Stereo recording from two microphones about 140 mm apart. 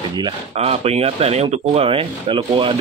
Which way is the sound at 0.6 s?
50° right (ahead or behind).